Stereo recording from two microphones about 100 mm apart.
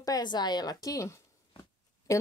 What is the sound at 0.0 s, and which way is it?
A woman's voice, 40° left (ahead or behind).